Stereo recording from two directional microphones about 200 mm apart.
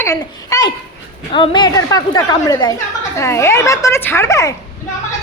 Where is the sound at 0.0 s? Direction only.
15° left (ahead or behind).